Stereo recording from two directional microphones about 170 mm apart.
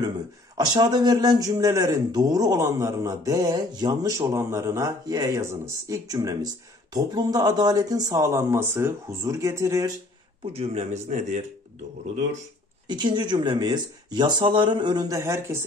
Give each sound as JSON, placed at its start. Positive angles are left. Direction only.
{"t": 0.6, "sound": "speech", "side_deg": -25}
{"t": 10.4, "sound": "speech", "side_deg": -35}
{"t": 12.8, "sound": "speech", "side_deg": -25}